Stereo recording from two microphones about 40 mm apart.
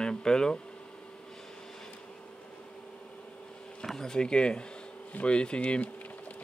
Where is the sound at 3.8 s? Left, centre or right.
Centre.